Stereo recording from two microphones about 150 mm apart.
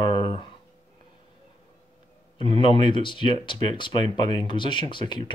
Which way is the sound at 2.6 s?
35° left (ahead or behind).